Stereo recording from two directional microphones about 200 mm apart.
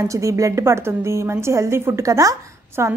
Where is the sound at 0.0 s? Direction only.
15° right (ahead or behind).